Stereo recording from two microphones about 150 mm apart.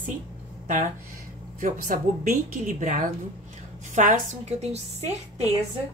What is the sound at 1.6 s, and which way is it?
A woman's voice, 65° right (ahead or behind).